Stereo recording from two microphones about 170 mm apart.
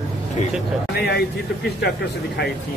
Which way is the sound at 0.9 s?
70° left (ahead or behind).